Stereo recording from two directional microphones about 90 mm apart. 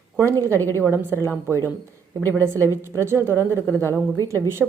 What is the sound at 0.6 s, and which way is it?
Speech, 25° left (ahead or behind).